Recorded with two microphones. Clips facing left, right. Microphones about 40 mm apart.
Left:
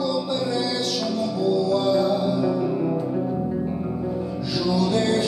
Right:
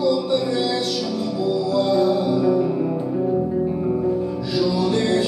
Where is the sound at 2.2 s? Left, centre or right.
Right.